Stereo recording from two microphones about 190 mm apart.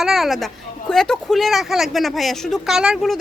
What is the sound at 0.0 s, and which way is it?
Speech, centre (ahead or behind).